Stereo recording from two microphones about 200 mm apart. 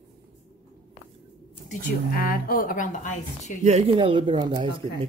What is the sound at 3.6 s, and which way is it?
Speech, 30° right (ahead or behind).